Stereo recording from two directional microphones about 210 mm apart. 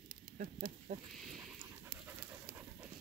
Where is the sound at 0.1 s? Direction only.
45° right (ahead or behind).